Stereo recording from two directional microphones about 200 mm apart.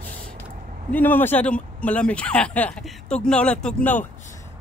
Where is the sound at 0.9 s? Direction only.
10° left (ahead or behind).